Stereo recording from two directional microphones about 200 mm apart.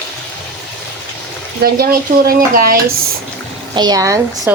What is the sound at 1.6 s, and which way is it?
Speech, 50° right (ahead or behind).